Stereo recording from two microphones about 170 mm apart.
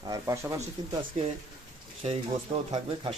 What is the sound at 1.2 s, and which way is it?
Speech, 40° right (ahead or behind).